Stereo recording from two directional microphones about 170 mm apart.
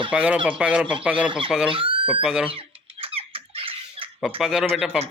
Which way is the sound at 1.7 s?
30° right (ahead or behind).